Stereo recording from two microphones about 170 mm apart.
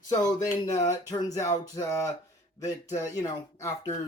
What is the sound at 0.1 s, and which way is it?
Speech, 20° left (ahead or behind).